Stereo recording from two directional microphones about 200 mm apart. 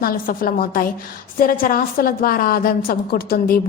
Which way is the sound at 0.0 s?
45° left (ahead or behind).